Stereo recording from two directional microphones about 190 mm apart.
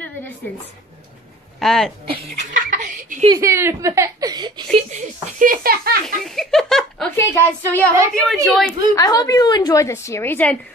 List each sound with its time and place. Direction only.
1.6 s speech: centre (ahead or behind)
2.3 s giggle: 45° right (ahead or behind)
3.3 s a woman's voice: 15° right (ahead or behind)
4.9 s speech: 45° right (ahead or behind)
6.0 s speech: centre (ahead or behind)
8.9 s a woman's voice: 20° left (ahead or behind)